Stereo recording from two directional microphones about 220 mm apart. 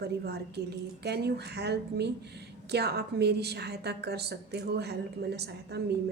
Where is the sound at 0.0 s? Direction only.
45° right (ahead or behind).